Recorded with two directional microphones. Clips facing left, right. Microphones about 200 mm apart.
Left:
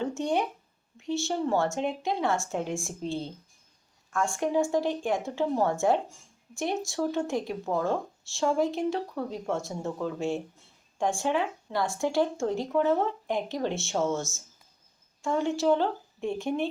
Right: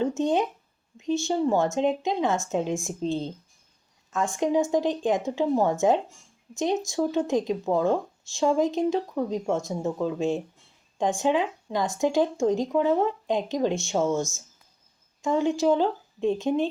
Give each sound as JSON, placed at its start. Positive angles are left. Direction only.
{"t": 0.0, "sound": "speech", "side_deg": -20}